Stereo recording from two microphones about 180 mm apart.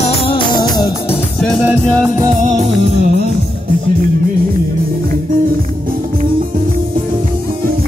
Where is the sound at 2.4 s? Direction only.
45° right (ahead or behind).